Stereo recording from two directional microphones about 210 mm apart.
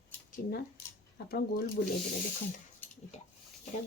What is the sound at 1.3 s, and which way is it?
Speech, 50° left (ahead or behind).